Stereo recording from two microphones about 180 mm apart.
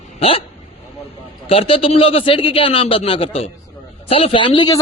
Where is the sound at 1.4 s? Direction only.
30° left (ahead or behind).